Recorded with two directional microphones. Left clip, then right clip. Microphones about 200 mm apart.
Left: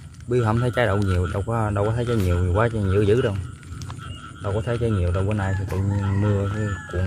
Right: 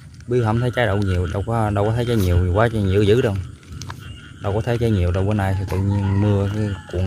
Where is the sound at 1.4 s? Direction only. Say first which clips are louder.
Right 4 dB; 10° right (ahead or behind).